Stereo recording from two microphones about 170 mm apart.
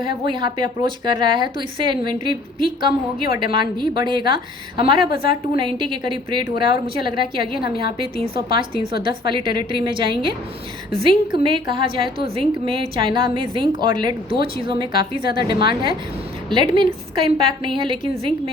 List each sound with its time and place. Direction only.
0.0 s a woman's voice: 30° right (ahead or behind)
7.6 s a woman's voice: 65° left (ahead or behind)
8.0 s a woman's voice: 35° right (ahead or behind)